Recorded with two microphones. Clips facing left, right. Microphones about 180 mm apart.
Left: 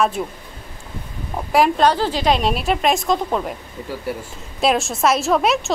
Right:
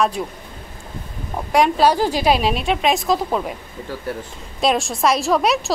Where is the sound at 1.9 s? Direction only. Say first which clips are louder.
Right 1 dB; 10° right (ahead or behind).